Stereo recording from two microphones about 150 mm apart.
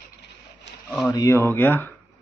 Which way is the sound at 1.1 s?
20° left (ahead or behind).